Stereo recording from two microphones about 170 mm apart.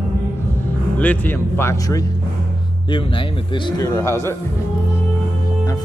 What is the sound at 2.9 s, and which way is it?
Speech, 30° left (ahead or behind).